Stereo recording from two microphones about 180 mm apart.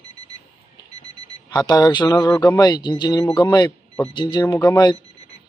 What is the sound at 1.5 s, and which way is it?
A man's voice, 20° left (ahead or behind).